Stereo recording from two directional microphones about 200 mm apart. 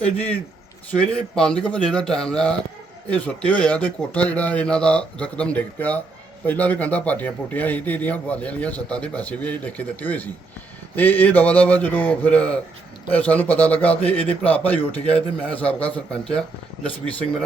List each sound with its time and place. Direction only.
0.9 s speech: 5° left (ahead or behind)